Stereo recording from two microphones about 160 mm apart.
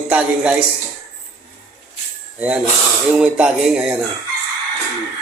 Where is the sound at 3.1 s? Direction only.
5° right (ahead or behind).